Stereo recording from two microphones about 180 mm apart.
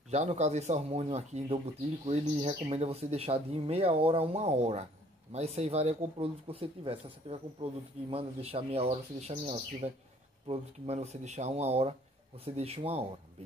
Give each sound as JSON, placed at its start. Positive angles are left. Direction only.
{"t": 0.1, "sound": "speech", "side_deg": -40}